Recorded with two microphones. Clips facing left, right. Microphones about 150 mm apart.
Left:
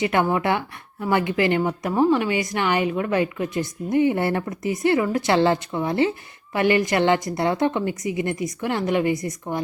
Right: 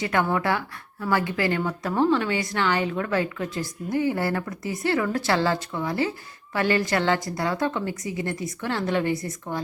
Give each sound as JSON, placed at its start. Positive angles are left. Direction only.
{"t": 0.0, "sound": "a woman's voice", "side_deg": 20}